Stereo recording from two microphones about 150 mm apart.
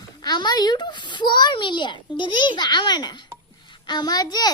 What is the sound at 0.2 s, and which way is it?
A child's voice, 30° left (ahead or behind).